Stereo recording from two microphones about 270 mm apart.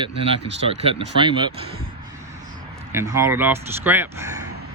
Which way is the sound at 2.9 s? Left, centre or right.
Centre.